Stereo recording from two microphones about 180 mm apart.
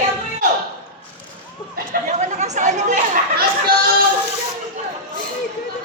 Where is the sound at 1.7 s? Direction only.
45° right (ahead or behind).